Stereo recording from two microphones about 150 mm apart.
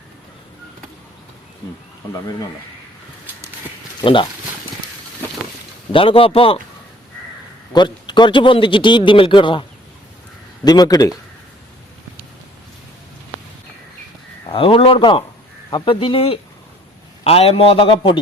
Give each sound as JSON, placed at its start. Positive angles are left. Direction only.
{"t": 4.0, "sound": "a man's voice", "side_deg": 35}
{"t": 5.9, "sound": "a man's voice", "side_deg": 35}
{"t": 7.7, "sound": "a man's voice", "side_deg": 30}
{"t": 14.4, "sound": "a man's voice", "side_deg": 35}